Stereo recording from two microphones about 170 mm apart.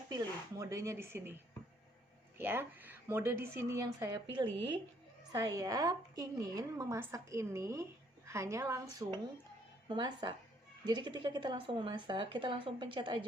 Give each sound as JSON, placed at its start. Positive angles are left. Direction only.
{"t": 0.1, "sound": "speech", "side_deg": -20}
{"t": 2.4, "sound": "a woman's voice", "side_deg": -15}